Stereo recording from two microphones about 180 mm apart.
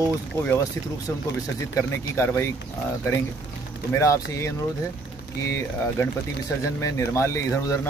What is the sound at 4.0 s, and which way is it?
Speech, 15° left (ahead or behind).